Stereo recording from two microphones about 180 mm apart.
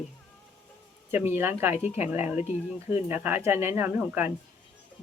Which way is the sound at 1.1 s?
15° right (ahead or behind).